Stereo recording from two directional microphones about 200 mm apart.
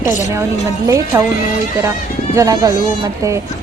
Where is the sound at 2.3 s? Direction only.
15° right (ahead or behind).